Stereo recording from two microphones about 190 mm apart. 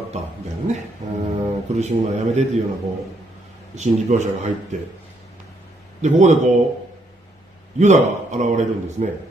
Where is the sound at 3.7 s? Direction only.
40° right (ahead or behind).